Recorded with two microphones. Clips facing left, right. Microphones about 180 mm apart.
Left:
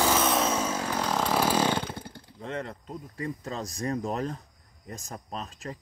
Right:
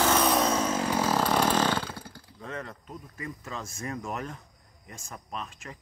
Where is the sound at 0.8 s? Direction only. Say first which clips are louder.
Right 2 dB; 5° right (ahead or behind); by 4.4 s 35° left (ahead or behind).